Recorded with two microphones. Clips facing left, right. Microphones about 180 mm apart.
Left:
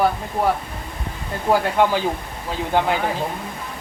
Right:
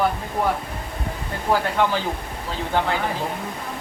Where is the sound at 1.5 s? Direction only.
35° left (ahead or behind).